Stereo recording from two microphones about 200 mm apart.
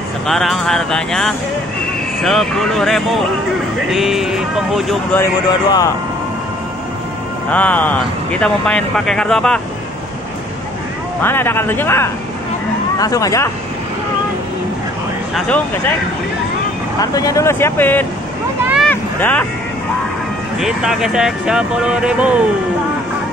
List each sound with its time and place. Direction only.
0.3 s speech: centre (ahead or behind)
5.1 s speech: 15° left (ahead or behind)
7.5 s speech: 5° left (ahead or behind)
11.2 s speech: 10° left (ahead or behind)
15.3 s speech: 5° left (ahead or behind)
17.0 s speech: 15° left (ahead or behind)
18.9 s vehicle: 10° left (ahead or behind)
20.5 s speech: centre (ahead or behind)